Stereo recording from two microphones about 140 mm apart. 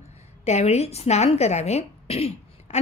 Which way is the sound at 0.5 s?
50° left (ahead or behind).